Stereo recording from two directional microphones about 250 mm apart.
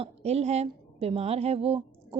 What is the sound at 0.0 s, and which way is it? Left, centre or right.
A woman's voice, right.